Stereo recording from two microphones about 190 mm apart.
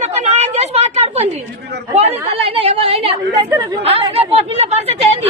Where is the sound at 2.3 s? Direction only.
30° right (ahead or behind).